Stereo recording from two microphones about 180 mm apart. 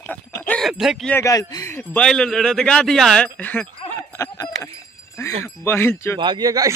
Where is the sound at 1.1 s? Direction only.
15° left (ahead or behind).